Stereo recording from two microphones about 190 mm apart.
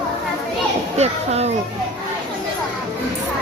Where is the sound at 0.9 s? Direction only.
35° right (ahead or behind).